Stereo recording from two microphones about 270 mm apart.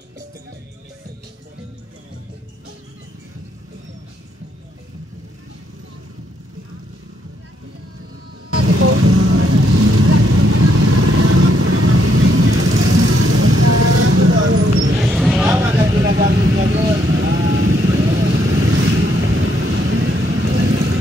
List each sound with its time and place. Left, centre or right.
8.5 s vehicle: right
15.1 s a sound: centre
15.9 s vehicle: right